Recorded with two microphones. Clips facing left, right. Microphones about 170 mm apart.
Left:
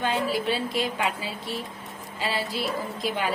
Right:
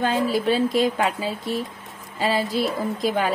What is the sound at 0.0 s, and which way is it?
A woman's voice, 40° right (ahead or behind).